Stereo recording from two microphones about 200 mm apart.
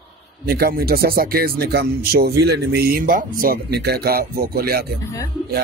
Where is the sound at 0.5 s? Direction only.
50° right (ahead or behind).